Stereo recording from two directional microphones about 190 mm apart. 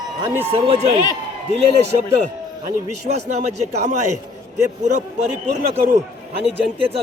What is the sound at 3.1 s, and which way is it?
Speech, 35° right (ahead or behind).